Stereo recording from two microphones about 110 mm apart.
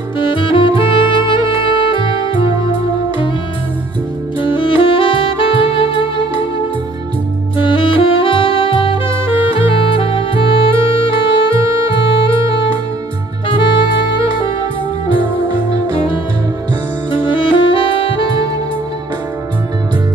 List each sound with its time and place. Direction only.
0.2 s music: 50° left (ahead or behind)
4.4 s saxophone: 50° left (ahead or behind)
7.5 s saxophone: 50° left (ahead or behind)
10.9 s music: 50° left (ahead or behind)
11.6 s music: 30° right (ahead or behind)
15.0 s music: 45° right (ahead or behind)
17.3 s music: 50° left (ahead or behind)